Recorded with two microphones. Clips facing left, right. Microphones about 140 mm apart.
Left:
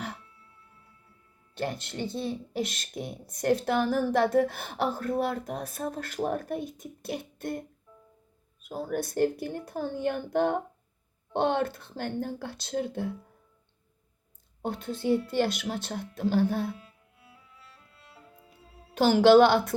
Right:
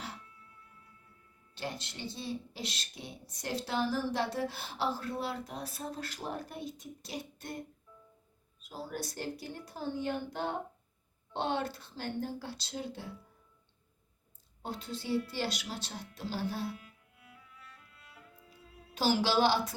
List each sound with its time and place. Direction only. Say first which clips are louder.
1.5 s speech: left 8 dB; 55° left (ahead or behind)
8.6 s speech: left 8 dB; 55° left (ahead or behind)
14.6 s speech: left 9 dB; 55° left (ahead or behind)
16.7 s music: left 1 dB; 30° left (ahead or behind)
18.9 s speech: left 11 dB; 55° left (ahead or behind)